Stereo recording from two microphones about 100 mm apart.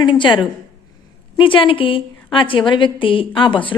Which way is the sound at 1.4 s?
60° left (ahead or behind).